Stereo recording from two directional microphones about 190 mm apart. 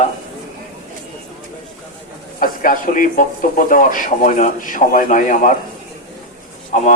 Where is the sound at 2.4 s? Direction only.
45° left (ahead or behind).